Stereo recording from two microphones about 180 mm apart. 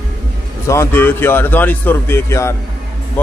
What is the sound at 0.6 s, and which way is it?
Speech, 15° left (ahead or behind).